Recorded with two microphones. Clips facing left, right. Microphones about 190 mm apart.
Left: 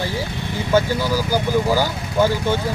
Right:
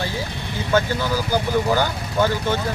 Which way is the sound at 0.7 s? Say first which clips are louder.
Left 2 dB; 10° left (ahead or behind).